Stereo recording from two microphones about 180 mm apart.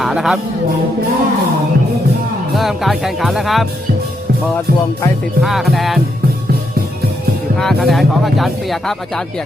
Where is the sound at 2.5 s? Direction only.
Centre (ahead or behind).